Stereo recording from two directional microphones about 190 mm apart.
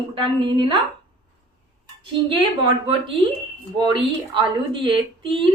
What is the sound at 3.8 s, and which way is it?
A woman's voice, 25° right (ahead or behind).